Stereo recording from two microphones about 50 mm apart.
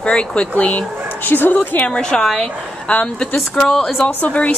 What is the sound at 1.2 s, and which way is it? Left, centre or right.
Speech, left.